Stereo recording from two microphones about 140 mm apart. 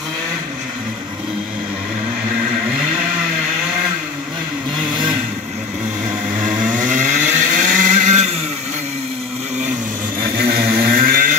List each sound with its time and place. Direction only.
6.8 s chainsaw: 60° right (ahead or behind)
10.2 s vehicle: 90° right
10.9 s a sound: 85° right